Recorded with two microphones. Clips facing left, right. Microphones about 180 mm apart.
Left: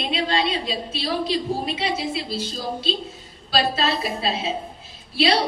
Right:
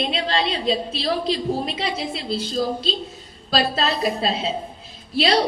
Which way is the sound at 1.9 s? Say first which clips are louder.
Even; centre (ahead or behind).